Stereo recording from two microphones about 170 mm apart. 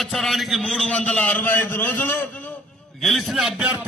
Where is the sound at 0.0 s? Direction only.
Centre (ahead or behind).